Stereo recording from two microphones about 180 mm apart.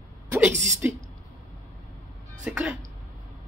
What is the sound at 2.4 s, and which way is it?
Speech, 5° right (ahead or behind).